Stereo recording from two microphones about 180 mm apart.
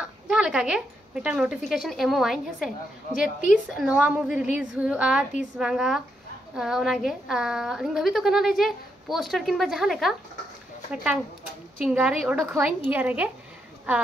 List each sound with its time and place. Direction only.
0.0 s a woman's voice: 5° right (ahead or behind)
3.2 s a woman's voice: 50° left (ahead or behind)
3.7 s a woman's voice: 5° right (ahead or behind)
11.8 s a woman's voice: 5° right (ahead or behind)